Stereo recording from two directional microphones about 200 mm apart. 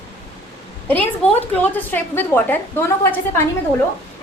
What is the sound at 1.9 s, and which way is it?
Speech, 10° left (ahead or behind).